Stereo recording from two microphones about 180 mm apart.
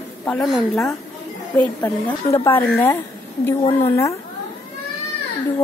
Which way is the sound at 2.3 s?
30° left (ahead or behind).